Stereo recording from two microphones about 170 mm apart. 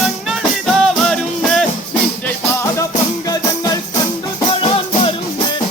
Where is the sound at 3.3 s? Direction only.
20° left (ahead or behind).